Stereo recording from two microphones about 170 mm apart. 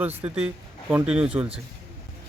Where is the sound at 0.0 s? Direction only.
10° right (ahead or behind).